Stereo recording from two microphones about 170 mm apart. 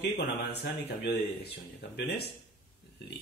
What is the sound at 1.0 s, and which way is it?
Speech, 75° left (ahead or behind).